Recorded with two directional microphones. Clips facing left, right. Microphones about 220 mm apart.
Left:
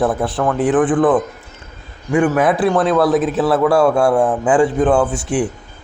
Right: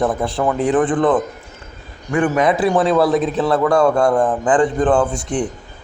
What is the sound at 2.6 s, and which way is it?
A man's voice, centre (ahead or behind).